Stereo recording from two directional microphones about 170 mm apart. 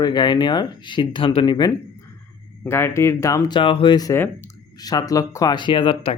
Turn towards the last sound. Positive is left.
turn(degrees=35)  # may be behind; listen again after turning